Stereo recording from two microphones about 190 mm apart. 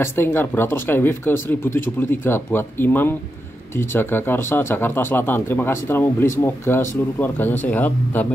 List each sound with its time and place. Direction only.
0.0 s speech: 10° left (ahead or behind)